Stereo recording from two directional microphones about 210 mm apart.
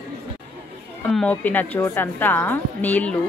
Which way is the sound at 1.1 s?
5° left (ahead or behind).